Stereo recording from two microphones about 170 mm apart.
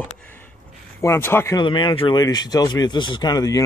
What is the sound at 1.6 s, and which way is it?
Speech, 30° left (ahead or behind).